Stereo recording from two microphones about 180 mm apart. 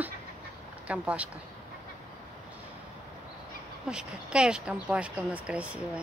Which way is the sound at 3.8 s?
5° right (ahead or behind).